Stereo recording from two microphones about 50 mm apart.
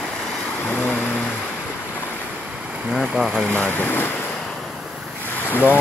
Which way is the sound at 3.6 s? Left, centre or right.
Left.